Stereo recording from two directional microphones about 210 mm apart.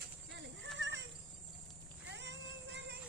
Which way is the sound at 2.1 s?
55° right (ahead or behind).